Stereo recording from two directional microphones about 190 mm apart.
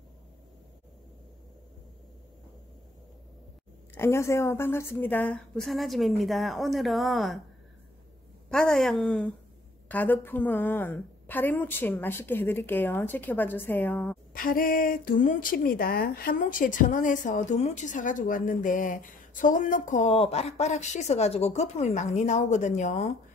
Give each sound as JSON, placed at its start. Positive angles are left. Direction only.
{"t": 3.9, "sound": "a woman's voice", "side_deg": 15}
{"t": 8.5, "sound": "a woman's voice", "side_deg": 0}
{"t": 14.3, "sound": "speech", "side_deg": 45}